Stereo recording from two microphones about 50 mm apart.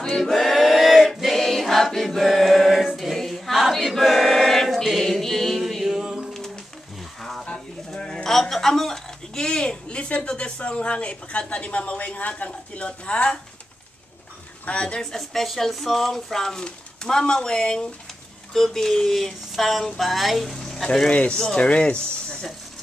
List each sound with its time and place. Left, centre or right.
0.1 s choir: centre
2.9 s a capella: centre
3.7 s choir: centre
5.9 s a sound: centre
6.3 s a sound: centre
7.4 s speech: centre
14.6 s a woman's voice: left
15.0 s speech: centre
21.1 s a woman's voice: left